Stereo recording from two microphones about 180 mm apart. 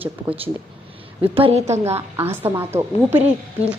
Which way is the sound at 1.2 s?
30° right (ahead or behind).